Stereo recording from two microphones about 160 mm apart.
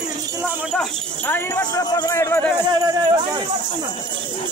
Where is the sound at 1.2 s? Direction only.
15° left (ahead or behind).